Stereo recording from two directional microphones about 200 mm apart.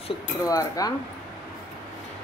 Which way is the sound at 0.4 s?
15° left (ahead or behind).